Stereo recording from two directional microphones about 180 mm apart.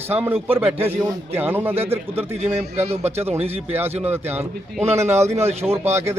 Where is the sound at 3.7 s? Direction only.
10° right (ahead or behind).